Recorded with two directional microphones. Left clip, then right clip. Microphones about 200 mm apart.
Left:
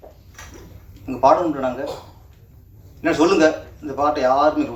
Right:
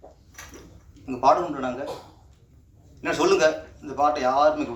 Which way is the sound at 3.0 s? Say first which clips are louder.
Left 4 dB; 60° right (ahead or behind).